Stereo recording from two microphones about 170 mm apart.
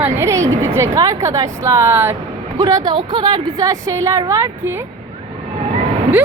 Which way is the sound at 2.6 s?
25° right (ahead or behind).